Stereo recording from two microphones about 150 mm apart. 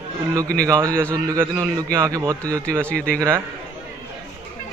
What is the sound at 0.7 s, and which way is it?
A man's voice, 20° right (ahead or behind).